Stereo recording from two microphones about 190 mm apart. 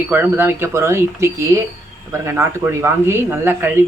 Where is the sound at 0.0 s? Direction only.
10° right (ahead or behind).